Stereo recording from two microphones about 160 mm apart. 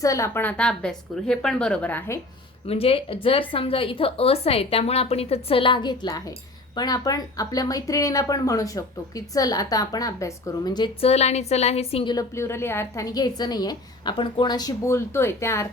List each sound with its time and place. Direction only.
0.0 s a woman's voice: 20° left (ahead or behind)
2.6 s a woman's voice: 35° left (ahead or behind)
11.0 s a woman's voice: 40° left (ahead or behind)
12.1 s speech: 15° left (ahead or behind)